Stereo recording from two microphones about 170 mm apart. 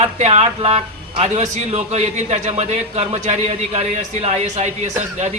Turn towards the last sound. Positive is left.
turn(degrees=-40)  # may be behind; listen again after turning